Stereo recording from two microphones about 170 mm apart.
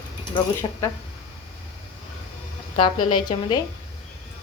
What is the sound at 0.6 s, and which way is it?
Speech, 25° left (ahead or behind).